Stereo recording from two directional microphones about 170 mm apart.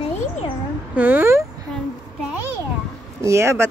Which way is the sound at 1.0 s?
10° right (ahead or behind).